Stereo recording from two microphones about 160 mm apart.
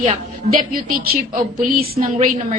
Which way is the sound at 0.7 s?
65° right (ahead or behind).